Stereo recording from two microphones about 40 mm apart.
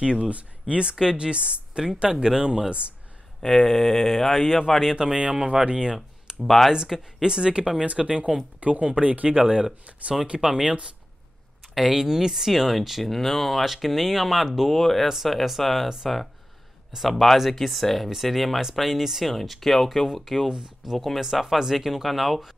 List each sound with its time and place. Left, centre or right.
0.0 s speech: right
3.4 s speech: centre
4.9 s speech: right
6.4 s speech: centre
6.7 s speech: centre; by 10.1 s right
10.4 s speech: centre
11.9 s speech: centre
16.9 s speech: centre